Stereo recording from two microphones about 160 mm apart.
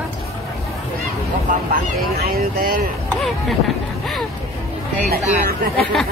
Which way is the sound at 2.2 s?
70° right (ahead or behind).